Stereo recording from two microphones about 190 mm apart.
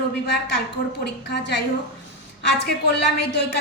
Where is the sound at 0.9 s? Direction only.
65° left (ahead or behind).